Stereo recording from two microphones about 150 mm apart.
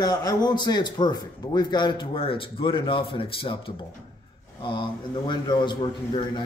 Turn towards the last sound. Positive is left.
turn(degrees=30)  # may be behind; listen again after turning